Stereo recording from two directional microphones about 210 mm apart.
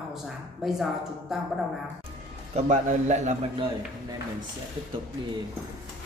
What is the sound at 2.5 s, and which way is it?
A man's voice, 35° right (ahead or behind).